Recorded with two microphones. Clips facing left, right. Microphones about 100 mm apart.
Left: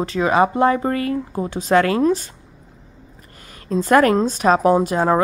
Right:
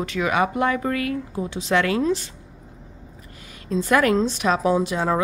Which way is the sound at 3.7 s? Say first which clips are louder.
Left 4 dB; 45° left (ahead or behind).